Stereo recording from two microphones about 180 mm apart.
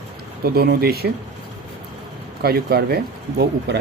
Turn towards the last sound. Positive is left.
turn(degrees=-60)  # may be behind; listen again after turning